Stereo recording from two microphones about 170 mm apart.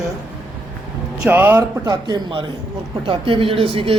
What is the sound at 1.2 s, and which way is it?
Speech, 10° right (ahead or behind).